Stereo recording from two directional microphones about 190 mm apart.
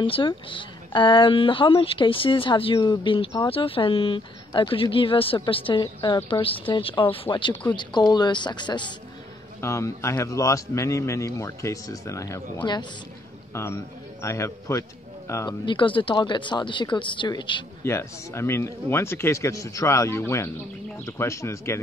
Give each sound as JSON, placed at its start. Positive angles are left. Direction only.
{"t": 0.0, "sound": "speech", "side_deg": 25}
{"t": 5.9, "sound": "a man's voice", "side_deg": 15}
{"t": 6.2, "sound": "a man's voice", "side_deg": 25}
{"t": 15.6, "sound": "speech", "side_deg": 25}
{"t": 17.8, "sound": "a man's voice", "side_deg": 15}